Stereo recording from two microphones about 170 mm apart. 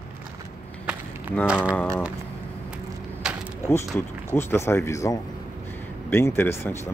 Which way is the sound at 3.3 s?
5° right (ahead or behind).